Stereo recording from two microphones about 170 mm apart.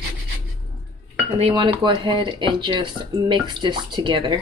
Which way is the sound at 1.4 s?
30° right (ahead or behind).